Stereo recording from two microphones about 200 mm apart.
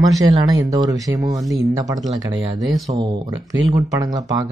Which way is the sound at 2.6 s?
Centre (ahead or behind).